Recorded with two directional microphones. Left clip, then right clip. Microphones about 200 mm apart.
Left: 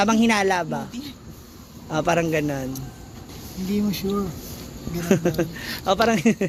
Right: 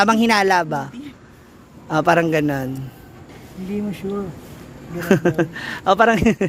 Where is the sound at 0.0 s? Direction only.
40° right (ahead or behind).